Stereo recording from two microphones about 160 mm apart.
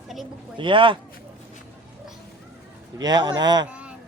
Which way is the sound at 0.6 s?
30° right (ahead or behind).